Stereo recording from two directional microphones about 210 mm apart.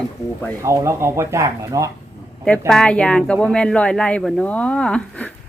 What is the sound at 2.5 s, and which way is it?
Speech, 5° left (ahead or behind).